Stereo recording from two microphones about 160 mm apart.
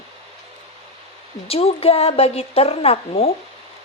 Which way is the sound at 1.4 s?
40° left (ahead or behind).